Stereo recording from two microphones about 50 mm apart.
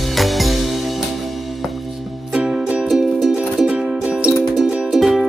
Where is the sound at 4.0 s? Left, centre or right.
Right.